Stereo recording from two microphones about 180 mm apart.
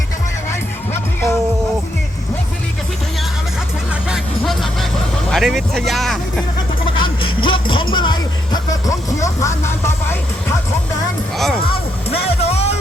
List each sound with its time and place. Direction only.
0.9 s music: 15° left (ahead or behind)
4.1 s music: centre (ahead or behind)
5.3 s speech: centre (ahead or behind)
6.9 s a sound: 25° left (ahead or behind)
11.3 s music: centre (ahead or behind)
12.4 s music: 35° left (ahead or behind)